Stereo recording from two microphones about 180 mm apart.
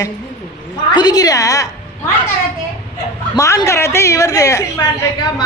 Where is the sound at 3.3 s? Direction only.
20° left (ahead or behind).